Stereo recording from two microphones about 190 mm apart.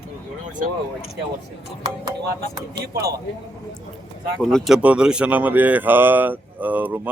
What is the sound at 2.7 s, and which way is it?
Speech, 55° right (ahead or behind).